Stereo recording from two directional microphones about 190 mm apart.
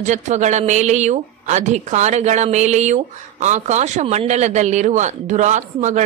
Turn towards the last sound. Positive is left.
turn(degrees=-40)  # may be behind; listen again after turning